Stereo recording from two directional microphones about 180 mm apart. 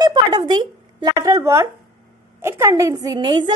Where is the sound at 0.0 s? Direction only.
25° right (ahead or behind).